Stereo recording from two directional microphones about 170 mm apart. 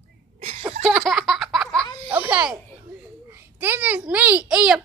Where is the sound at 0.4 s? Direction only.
40° right (ahead or behind).